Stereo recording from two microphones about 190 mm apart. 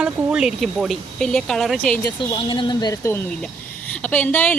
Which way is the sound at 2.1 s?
25° left (ahead or behind).